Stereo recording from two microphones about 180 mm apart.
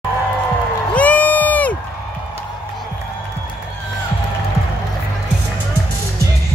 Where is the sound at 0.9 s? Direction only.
10° left (ahead or behind).